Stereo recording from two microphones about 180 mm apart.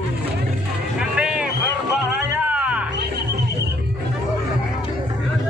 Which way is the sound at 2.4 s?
5° right (ahead or behind).